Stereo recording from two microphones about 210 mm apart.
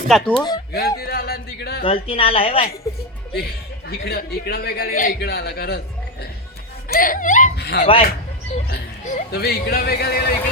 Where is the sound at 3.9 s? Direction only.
50° left (ahead or behind).